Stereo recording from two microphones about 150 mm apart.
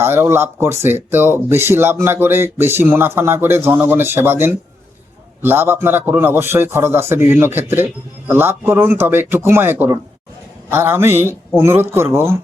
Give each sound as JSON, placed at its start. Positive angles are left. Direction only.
{"t": 0.0, "sound": "speech", "side_deg": -15}